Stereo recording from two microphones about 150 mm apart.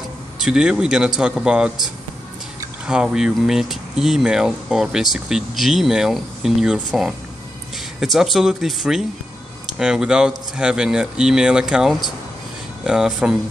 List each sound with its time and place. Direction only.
0.4 s speech: 5° right (ahead or behind)
2.9 s speech: 5° right (ahead or behind)